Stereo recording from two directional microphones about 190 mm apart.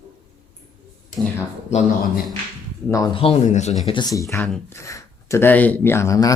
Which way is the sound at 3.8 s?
25° left (ahead or behind).